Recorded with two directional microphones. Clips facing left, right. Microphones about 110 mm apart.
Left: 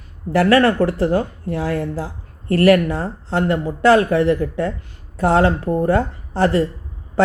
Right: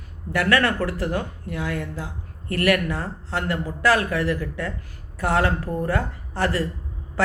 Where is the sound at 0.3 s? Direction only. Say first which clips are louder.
Left 7 dB; 30° left (ahead or behind).